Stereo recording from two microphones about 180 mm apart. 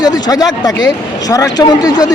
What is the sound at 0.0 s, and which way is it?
Speech, 20° left (ahead or behind).